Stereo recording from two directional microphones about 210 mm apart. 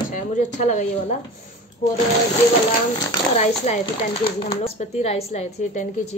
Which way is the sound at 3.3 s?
35° left (ahead or behind).